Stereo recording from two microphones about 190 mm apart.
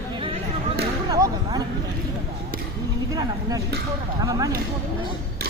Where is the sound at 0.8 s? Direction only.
20° right (ahead or behind).